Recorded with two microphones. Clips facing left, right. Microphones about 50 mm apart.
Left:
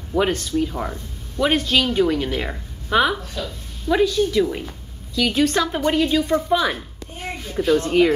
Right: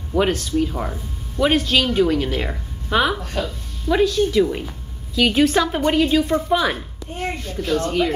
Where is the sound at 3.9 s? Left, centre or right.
Centre.